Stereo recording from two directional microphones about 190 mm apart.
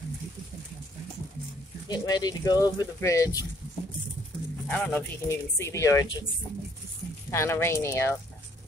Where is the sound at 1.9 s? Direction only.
20° left (ahead or behind).